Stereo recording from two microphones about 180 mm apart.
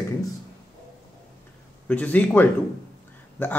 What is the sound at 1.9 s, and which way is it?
A woman's voice, 10° left (ahead or behind).